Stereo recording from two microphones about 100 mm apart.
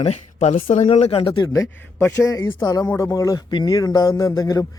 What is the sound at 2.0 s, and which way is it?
Speech, 15° left (ahead or behind).